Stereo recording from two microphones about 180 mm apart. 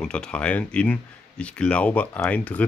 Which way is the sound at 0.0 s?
5° left (ahead or behind).